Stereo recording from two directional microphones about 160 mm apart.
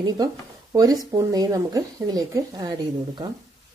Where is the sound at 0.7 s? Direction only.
25° right (ahead or behind).